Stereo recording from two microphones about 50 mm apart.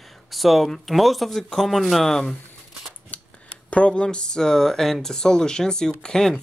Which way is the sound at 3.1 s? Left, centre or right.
Left.